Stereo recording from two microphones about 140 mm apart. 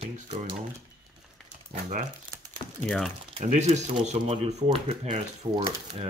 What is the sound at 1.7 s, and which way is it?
Crumpling, 60° right (ahead or behind).